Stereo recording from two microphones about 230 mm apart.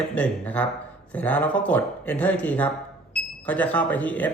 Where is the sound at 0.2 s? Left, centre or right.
Centre.